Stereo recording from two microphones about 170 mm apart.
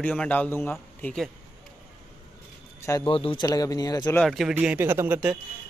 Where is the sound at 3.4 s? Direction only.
20° left (ahead or behind).